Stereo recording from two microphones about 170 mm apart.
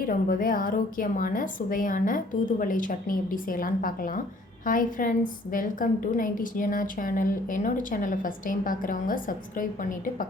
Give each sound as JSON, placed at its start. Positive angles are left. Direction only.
{"t": 0.1, "sound": "a woman's voice", "side_deg": 55}